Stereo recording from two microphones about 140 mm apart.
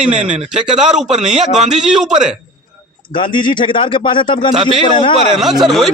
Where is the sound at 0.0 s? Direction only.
5° right (ahead or behind).